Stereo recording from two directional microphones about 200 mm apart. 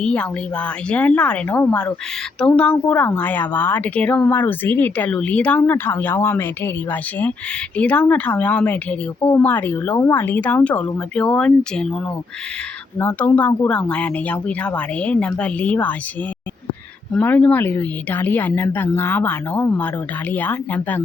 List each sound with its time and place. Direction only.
0.0 s a woman's voice: 5° left (ahead or behind)
13.0 s a woman's voice: 10° left (ahead or behind)
17.2 s a woman's voice: 5° left (ahead or behind)